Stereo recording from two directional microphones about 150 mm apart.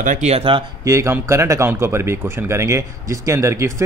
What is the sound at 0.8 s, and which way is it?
Speech, 20° right (ahead or behind).